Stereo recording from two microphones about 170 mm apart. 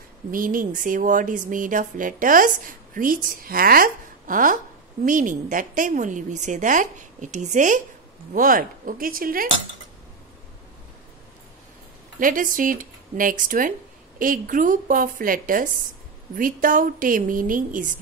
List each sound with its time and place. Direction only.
0.3 s speech: 55° right (ahead or behind)
12.2 s speech: 50° right (ahead or behind)